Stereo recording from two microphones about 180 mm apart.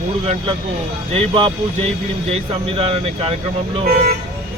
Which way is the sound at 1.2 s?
30° right (ahead or behind).